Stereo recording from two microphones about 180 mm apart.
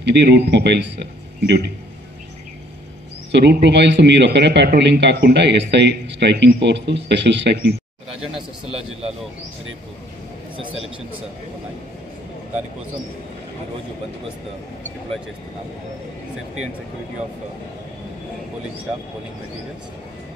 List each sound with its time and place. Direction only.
0.0 s a man's voice: 70° right (ahead or behind)
3.3 s a man's voice: 75° right (ahead or behind)